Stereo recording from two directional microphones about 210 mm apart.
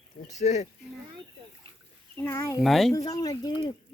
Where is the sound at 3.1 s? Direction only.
15° left (ahead or behind).